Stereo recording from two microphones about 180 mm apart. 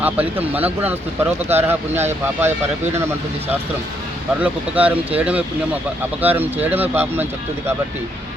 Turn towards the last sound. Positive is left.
turn(degrees=-10)  # may be behind; listen again after turning